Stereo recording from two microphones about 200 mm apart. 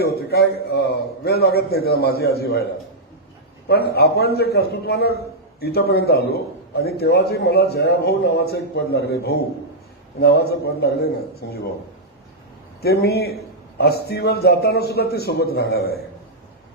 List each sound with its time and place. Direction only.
0.0 s a man's voice: 50° left (ahead or behind)
3.7 s a man's voice: 55° left (ahead or behind)
12.8 s a man's voice: 55° left (ahead or behind)